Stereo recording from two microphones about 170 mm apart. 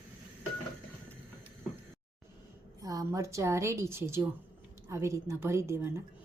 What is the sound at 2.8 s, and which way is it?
A woman's voice, 20° right (ahead or behind).